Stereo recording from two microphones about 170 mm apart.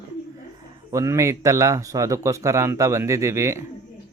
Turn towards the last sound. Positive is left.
turn(degrees=-15)  # may be behind; listen again after turning